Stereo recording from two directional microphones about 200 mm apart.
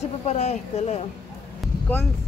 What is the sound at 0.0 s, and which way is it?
Speech, 35° left (ahead or behind).